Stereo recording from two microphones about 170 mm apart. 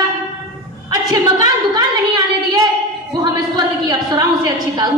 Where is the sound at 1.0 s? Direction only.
20° right (ahead or behind).